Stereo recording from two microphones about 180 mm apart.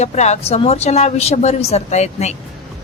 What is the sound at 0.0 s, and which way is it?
Speech, 40° left (ahead or behind).